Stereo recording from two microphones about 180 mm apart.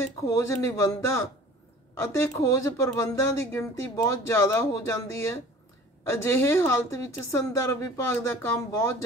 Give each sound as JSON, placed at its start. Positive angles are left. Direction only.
{"t": 0.2, "sound": "speech", "side_deg": 15}